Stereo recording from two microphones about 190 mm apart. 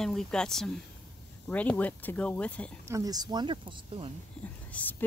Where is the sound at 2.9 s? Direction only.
20° right (ahead or behind).